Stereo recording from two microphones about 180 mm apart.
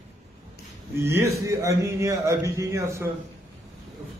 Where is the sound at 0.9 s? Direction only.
15° right (ahead or behind).